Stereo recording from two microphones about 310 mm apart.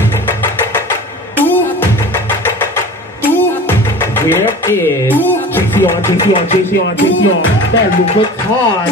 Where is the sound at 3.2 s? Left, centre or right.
Centre.